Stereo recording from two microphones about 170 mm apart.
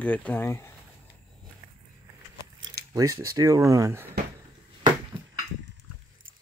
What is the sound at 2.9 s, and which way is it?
Speech, 20° right (ahead or behind).